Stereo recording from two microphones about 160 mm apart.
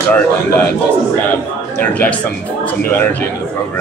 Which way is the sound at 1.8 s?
10° left (ahead or behind).